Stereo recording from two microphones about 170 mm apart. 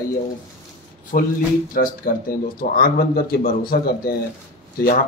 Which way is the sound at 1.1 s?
50° left (ahead or behind).